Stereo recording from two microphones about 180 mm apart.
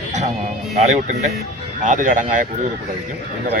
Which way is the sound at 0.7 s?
40° right (ahead or behind).